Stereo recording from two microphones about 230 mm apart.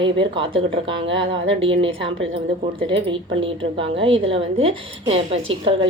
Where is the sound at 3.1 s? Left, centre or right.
Right.